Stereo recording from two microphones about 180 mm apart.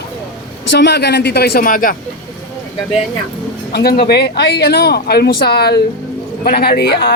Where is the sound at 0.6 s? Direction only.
75° left (ahead or behind); by 1.9 s 50° left (ahead or behind).